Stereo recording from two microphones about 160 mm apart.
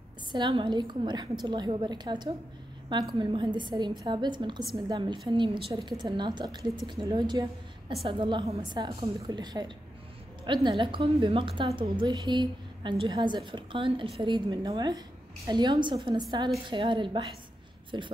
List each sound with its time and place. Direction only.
0.3 s a woman's voice: 30° right (ahead or behind)